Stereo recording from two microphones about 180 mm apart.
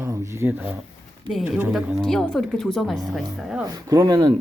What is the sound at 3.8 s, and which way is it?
Speech, 20° right (ahead or behind).